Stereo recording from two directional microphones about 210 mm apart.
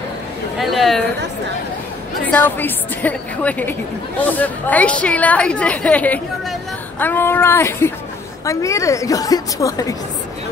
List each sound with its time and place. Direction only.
0.6 s speech: centre (ahead or behind)
2.3 s a woman's voice: 10° left (ahead or behind)